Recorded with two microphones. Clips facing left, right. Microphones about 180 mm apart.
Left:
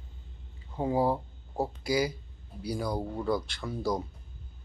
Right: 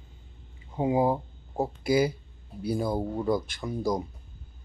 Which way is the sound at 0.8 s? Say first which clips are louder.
Right 3 dB; 15° right (ahead or behind).